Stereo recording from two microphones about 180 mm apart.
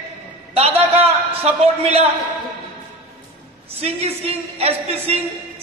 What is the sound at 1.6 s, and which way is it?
Speech, 35° right (ahead or behind).